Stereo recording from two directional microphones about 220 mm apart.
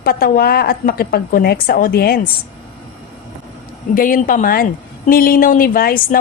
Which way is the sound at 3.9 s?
40° left (ahead or behind).